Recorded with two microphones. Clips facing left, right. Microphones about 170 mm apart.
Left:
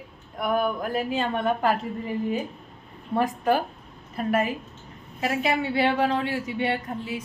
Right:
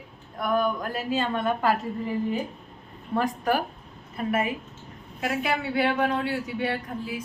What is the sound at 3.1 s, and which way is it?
Speech, 20° left (ahead or behind).